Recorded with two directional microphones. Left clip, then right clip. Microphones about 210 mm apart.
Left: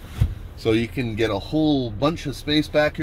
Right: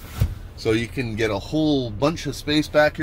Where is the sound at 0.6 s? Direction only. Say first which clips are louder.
Left 1 dB; 5° left (ahead or behind).